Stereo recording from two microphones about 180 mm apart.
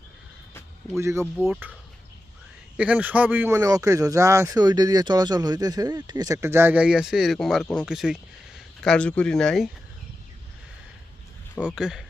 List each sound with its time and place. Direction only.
0.9 s speech: 15° right (ahead or behind)
2.7 s speech: 5° right (ahead or behind)
11.6 s speech: 5° right (ahead or behind)